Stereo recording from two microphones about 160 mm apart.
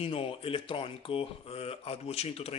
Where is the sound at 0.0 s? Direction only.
35° left (ahead or behind).